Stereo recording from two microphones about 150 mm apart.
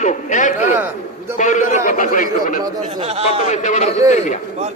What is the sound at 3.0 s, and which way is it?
Speech, 40° right (ahead or behind).